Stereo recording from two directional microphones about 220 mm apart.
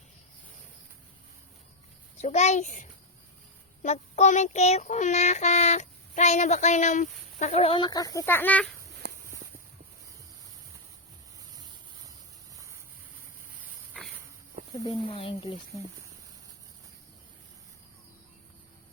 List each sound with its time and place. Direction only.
2.2 s child singing: 30° left (ahead or behind)
3.8 s child singing: 30° left (ahead or behind); by 8.7 s 5° left (ahead or behind)
9.0 s walk: 50° right (ahead or behind)
14.8 s speech: 25° left (ahead or behind)